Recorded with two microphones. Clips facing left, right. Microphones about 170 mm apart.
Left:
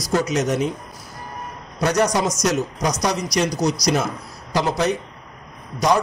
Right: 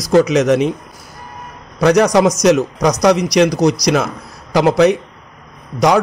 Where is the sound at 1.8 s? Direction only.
70° right (ahead or behind).